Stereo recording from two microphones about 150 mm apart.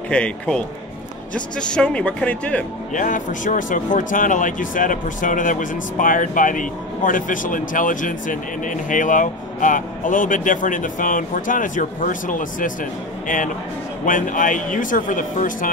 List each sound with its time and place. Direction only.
0.1 s speech: 5° left (ahead or behind)
2.9 s speech: 60° left (ahead or behind)
14.0 s speech: 65° left (ahead or behind)